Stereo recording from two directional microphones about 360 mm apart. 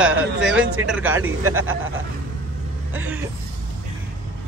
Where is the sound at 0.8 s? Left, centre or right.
Centre.